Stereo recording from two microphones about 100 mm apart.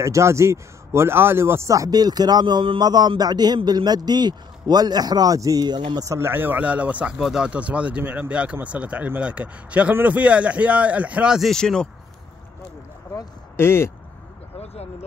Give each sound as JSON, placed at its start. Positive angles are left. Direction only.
{"t": 0.0, "sound": "a man's voice", "side_deg": -30}
{"t": 2.8, "sound": "a man's voice", "side_deg": -45}
{"t": 11.3, "sound": "speech", "side_deg": 5}
{"t": 13.1, "sound": "speech", "side_deg": 25}
{"t": 14.6, "sound": "a sound", "side_deg": 90}